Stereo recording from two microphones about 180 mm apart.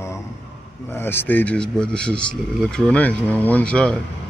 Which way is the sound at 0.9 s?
10° left (ahead or behind).